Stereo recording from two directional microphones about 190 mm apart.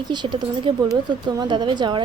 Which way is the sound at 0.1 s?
25° right (ahead or behind).